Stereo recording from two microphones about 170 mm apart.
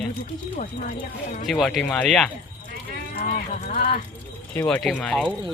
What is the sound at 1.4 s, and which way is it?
Speech, centre (ahead or behind).